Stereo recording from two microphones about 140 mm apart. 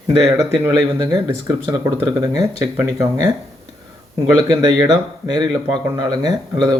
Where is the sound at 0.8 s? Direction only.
30° right (ahead or behind).